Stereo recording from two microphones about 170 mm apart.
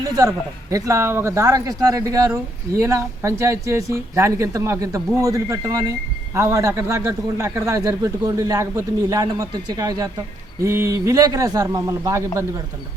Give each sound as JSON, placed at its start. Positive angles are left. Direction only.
{"t": 0.0, "sound": "a man's voice", "side_deg": -20}